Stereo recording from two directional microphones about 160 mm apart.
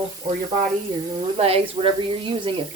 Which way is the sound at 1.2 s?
40° right (ahead or behind).